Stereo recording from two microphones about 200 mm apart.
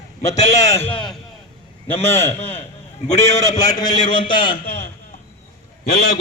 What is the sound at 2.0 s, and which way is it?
A man's voice, 10° left (ahead or behind).